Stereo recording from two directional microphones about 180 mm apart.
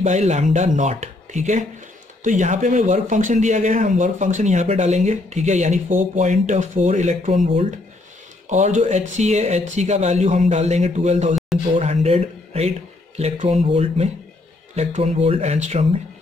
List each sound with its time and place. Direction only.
0.0 s speech: 40° right (ahead or behind)